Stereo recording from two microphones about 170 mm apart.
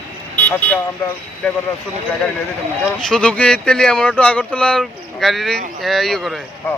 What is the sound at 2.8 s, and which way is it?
Speech, 5° left (ahead or behind).